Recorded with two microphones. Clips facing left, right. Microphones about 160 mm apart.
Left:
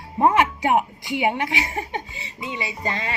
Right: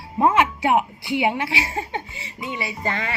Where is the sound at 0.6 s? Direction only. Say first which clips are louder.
Right 1 dB; 15° left (ahead or behind).